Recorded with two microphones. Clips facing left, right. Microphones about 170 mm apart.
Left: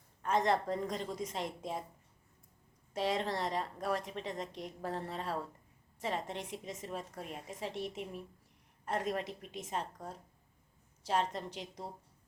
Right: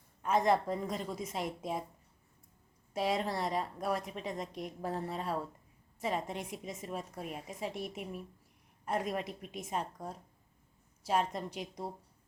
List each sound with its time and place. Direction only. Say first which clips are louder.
0.2 s a woman's voice: right 2 dB; 10° right (ahead or behind)
2.9 s a woman's voice: right 1 dB; 10° right (ahead or behind)